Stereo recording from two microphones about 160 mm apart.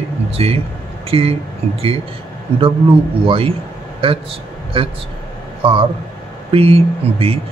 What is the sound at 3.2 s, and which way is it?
Speech, 35° right (ahead or behind).